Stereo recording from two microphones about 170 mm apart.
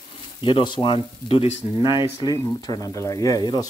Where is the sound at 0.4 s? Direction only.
30° left (ahead or behind).